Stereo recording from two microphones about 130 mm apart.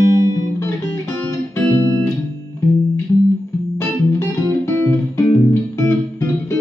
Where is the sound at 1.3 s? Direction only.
20° left (ahead or behind).